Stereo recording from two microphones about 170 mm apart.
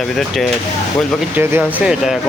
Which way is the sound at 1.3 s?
10° right (ahead or behind).